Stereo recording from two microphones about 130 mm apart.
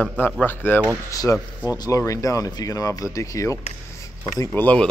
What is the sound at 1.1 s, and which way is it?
Speech, 25° left (ahead or behind).